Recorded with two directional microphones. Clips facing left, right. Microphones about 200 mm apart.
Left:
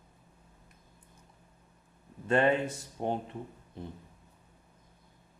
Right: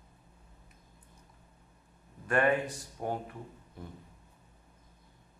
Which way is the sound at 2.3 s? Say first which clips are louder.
Left 2 dB; 25° left (ahead or behind).